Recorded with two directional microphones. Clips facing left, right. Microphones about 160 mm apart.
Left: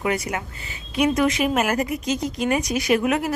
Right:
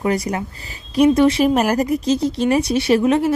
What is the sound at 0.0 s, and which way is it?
Speech, 35° right (ahead or behind).